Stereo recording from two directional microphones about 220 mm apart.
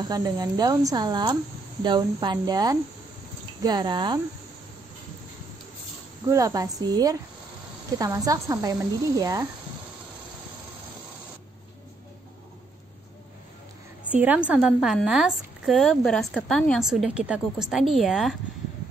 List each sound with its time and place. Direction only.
0.0 s speech: 15° right (ahead or behind)
6.2 s a woman's voice: 15° right (ahead or behind)
14.1 s a woman's voice: 5° right (ahead or behind)